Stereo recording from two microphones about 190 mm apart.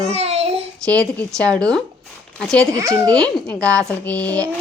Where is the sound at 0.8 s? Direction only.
5° left (ahead or behind).